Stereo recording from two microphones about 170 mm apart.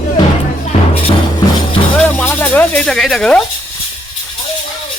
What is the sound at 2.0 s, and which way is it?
Music, 10° left (ahead or behind).